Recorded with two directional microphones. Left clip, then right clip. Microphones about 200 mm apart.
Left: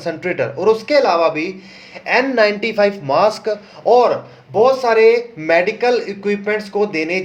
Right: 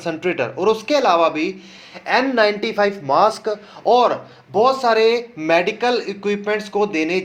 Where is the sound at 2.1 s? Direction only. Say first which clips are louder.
Left 2 dB; 15° right (ahead or behind).